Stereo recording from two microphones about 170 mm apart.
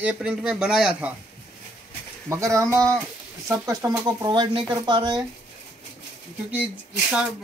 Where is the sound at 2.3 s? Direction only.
15° right (ahead or behind).